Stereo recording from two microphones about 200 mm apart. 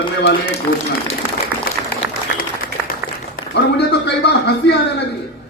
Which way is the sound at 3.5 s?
55° left (ahead or behind).